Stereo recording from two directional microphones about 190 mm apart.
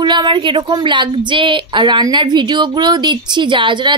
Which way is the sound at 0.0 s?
25° right (ahead or behind).